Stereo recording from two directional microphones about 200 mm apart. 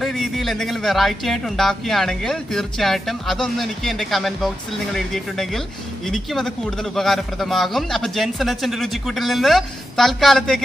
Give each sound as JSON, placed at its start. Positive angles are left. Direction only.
{"t": 0.0, "sound": "a man's voice", "side_deg": 0}